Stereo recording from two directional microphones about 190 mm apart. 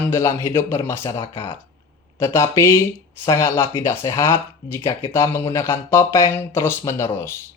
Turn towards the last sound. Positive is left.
turn(degrees=15)  # may be behind; listen again after turning